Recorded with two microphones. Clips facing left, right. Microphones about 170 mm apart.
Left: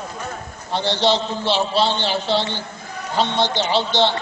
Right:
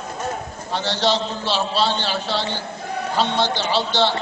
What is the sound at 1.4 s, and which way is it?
A man's voice, 15° left (ahead or behind).